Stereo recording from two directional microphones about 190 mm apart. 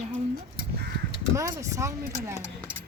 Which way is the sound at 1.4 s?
15° right (ahead or behind).